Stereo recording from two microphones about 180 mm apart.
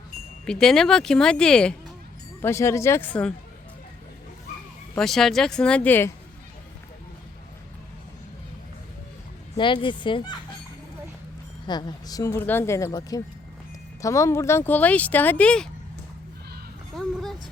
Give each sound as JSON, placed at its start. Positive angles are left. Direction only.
{"t": 0.4, "sound": "speech", "side_deg": 5}
{"t": 2.4, "sound": "speech", "side_deg": 15}
{"t": 4.9, "sound": "speech", "side_deg": 0}
{"t": 9.6, "sound": "speech", "side_deg": 25}
{"t": 11.6, "sound": "speech", "side_deg": 25}
{"t": 16.9, "sound": "a sound", "side_deg": 0}